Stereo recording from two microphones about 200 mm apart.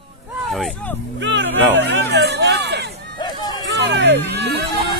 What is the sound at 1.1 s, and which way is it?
Speech, 65° right (ahead or behind).